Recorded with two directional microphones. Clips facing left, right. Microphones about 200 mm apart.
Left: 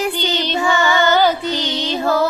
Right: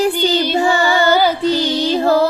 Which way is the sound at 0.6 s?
35° right (ahead or behind).